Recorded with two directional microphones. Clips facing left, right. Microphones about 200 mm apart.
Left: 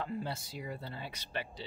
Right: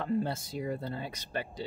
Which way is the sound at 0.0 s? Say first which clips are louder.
Right 7 dB; 50° right (ahead or behind).